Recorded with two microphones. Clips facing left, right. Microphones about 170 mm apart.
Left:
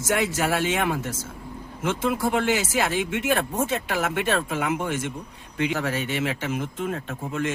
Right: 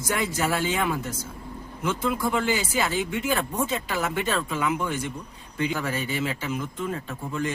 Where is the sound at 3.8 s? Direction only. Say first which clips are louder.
Left 2 dB; 70° left (ahead or behind).